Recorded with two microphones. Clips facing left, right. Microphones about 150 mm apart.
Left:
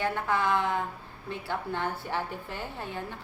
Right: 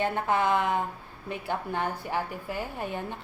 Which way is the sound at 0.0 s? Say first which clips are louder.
Right 2 dB; 20° right (ahead or behind).